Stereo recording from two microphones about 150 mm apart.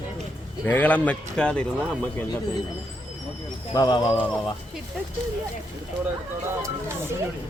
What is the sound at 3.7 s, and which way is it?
Speech, 30° left (ahead or behind).